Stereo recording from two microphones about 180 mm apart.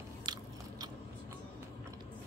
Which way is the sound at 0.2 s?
25° right (ahead or behind).